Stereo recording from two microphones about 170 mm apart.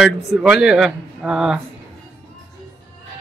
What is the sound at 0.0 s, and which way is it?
Speech, centre (ahead or behind).